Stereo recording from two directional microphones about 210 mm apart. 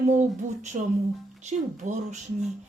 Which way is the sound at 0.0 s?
35° right (ahead or behind).